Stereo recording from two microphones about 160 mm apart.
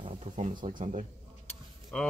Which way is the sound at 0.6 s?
50° right (ahead or behind).